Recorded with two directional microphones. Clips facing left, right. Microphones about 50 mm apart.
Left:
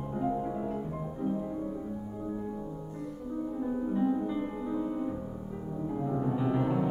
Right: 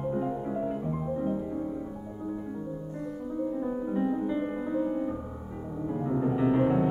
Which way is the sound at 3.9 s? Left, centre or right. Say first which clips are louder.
Right 1 dB; right.